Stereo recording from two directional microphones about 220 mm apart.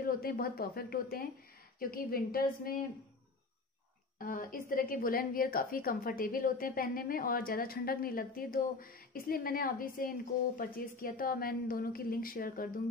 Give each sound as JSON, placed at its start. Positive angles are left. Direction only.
{"t": 0.0, "sound": "a woman's voice", "side_deg": 40}
{"t": 4.2, "sound": "a woman's voice", "side_deg": 40}